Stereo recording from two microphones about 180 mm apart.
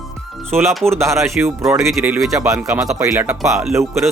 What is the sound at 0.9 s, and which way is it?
Speech, 15° right (ahead or behind).